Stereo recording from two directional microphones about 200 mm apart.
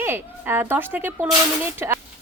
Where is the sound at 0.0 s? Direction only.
10° right (ahead or behind).